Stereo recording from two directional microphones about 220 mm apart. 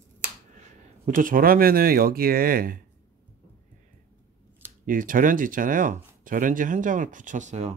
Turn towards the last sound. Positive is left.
turn(degrees=-30)  # may be behind; listen again after turning